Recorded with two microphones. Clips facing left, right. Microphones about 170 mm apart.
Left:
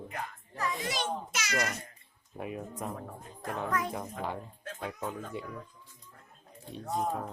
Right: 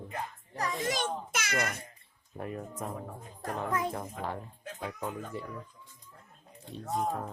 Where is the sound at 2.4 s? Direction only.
5° left (ahead or behind).